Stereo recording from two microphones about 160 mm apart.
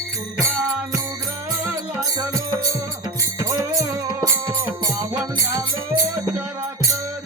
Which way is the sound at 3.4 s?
20° right (ahead or behind).